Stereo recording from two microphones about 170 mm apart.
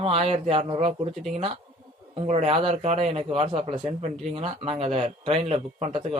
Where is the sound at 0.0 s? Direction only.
35° right (ahead or behind).